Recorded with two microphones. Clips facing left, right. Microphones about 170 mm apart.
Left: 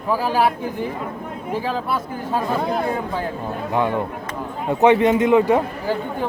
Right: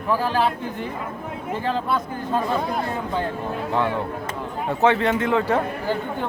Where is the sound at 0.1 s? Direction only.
10° left (ahead or behind).